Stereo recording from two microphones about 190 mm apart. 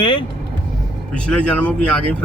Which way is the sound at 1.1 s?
5° left (ahead or behind).